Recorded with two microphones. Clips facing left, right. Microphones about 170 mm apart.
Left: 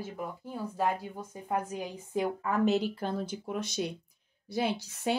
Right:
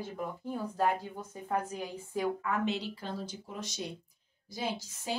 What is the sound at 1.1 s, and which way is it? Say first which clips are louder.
A woman's voice: left 1 dB; 10° left (ahead or behind).